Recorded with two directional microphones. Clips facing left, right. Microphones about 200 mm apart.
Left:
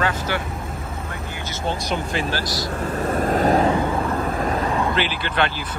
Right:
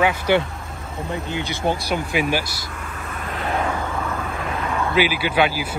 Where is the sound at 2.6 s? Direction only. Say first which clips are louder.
Left 10 dB; 35° left (ahead or behind).